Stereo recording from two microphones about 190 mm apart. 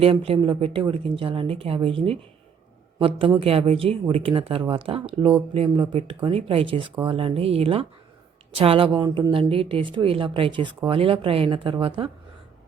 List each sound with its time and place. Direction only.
0.0 s a woman's voice: 30° right (ahead or behind)
9.5 s a woman's voice: 30° right (ahead or behind)